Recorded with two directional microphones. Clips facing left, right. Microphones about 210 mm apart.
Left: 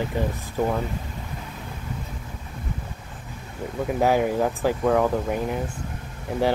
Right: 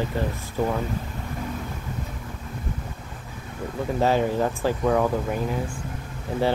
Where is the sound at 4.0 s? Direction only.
15° left (ahead or behind).